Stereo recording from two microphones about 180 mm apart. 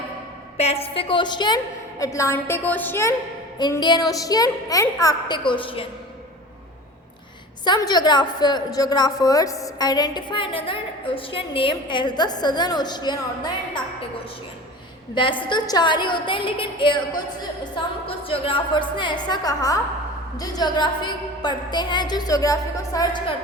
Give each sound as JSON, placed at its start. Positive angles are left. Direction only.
{"t": 0.5, "sound": "a woman's voice", "side_deg": 35}
{"t": 3.6, "sound": "a woman's voice", "side_deg": 25}
{"t": 7.6, "sound": "a woman's voice", "side_deg": 25}
{"t": 15.1, "sound": "a woman's voice", "side_deg": 25}